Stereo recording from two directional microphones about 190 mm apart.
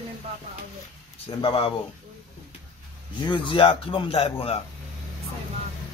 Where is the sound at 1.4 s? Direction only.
25° left (ahead or behind).